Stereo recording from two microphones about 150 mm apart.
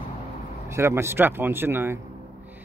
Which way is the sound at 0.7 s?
20° right (ahead or behind).